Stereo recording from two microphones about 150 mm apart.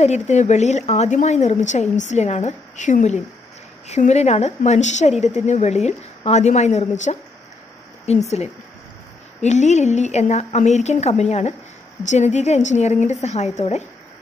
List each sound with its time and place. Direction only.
0.0 s a woman's voice: 50° left (ahead or behind)
9.4 s a woman's voice: 50° left (ahead or behind)